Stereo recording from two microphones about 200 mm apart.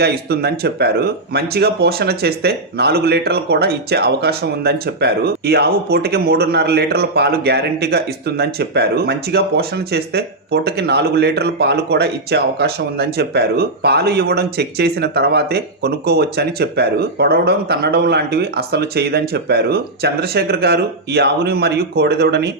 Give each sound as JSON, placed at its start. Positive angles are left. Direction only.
{"t": 0.0, "sound": "speech", "side_deg": -50}